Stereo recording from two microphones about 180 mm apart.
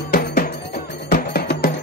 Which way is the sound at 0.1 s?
55° left (ahead or behind).